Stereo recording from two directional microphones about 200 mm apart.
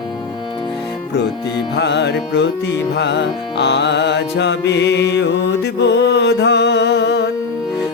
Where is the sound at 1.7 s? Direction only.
60° left (ahead or behind).